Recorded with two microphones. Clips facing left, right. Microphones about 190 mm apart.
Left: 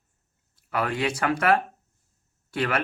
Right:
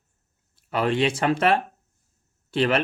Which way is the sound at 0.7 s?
25° right (ahead or behind).